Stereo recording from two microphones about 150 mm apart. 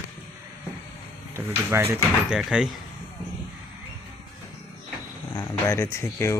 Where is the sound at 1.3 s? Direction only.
20° right (ahead or behind).